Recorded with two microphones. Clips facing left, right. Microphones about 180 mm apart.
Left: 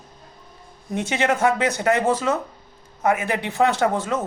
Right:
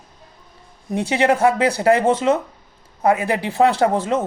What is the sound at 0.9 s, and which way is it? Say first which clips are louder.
Speech: right 4 dB; 30° right (ahead or behind).